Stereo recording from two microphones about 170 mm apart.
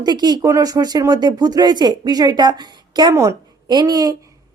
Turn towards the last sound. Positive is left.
turn(degrees=-20)  # may be behind; listen again after turning